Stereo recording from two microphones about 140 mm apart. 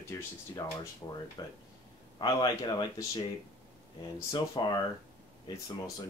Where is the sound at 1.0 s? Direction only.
30° left (ahead or behind).